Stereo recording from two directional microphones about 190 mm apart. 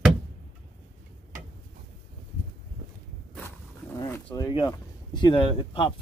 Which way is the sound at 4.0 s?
15° left (ahead or behind).